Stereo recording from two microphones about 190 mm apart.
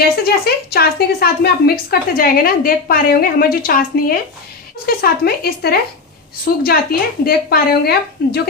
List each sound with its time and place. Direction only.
0.0 s a woman's voice: 55° left (ahead or behind)